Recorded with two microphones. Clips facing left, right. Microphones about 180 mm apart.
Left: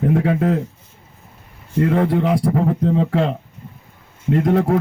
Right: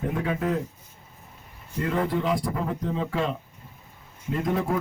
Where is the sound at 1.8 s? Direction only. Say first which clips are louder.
Left 8 dB; 65° left (ahead or behind).